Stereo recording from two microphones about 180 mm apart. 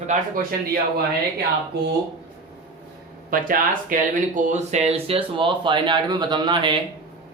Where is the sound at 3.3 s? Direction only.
50° right (ahead or behind); by 6.7 s 25° right (ahead or behind).